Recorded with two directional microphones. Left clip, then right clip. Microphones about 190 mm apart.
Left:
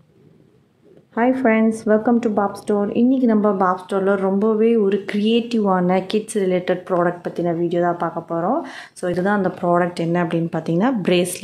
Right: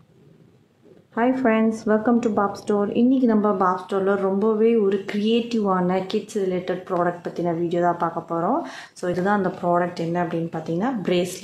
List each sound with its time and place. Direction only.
1.1 s speech: 20° left (ahead or behind)